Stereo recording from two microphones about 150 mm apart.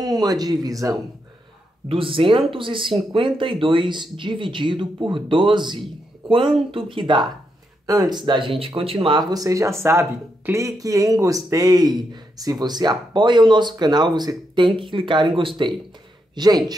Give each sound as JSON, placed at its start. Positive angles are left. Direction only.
{"t": 0.0, "sound": "speech", "side_deg": -25}
{"t": 1.9, "sound": "speech", "side_deg": -35}
{"t": 9.3, "sound": "speech", "side_deg": -25}